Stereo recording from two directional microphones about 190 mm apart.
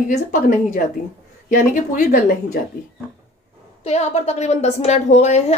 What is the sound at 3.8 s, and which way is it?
A woman's voice, 35° left (ahead or behind).